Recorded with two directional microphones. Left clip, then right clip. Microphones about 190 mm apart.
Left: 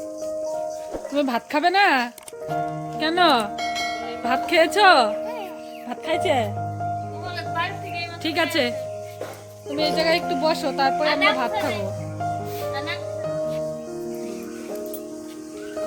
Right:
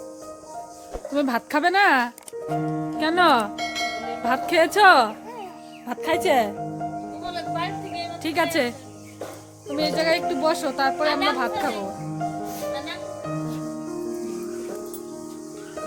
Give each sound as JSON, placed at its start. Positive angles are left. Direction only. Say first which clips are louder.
{"t": 1.1, "sound": "speech", "louder": "even", "side_deg": 0}
{"t": 5.9, "sound": "speech", "louder": "right 1 dB", "side_deg": -20}
{"t": 8.2, "sound": "speech", "louder": "left 1 dB", "side_deg": 0}
{"t": 9.7, "sound": "speech", "louder": "left 1 dB", "side_deg": 5}